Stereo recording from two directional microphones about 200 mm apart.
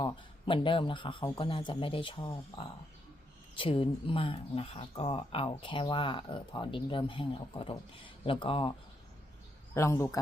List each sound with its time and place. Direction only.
0.0 s speech: 25° left (ahead or behind)
9.7 s a man's voice: 15° left (ahead or behind)